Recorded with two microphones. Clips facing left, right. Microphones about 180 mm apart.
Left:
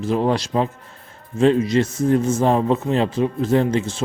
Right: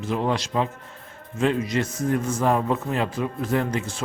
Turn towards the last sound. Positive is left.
turn(degrees=25)  # may be behind; listen again after turning